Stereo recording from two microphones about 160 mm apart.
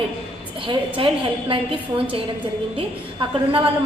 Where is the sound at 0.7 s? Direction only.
35° right (ahead or behind).